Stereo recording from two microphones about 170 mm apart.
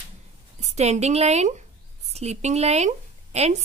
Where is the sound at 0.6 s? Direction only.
40° right (ahead or behind).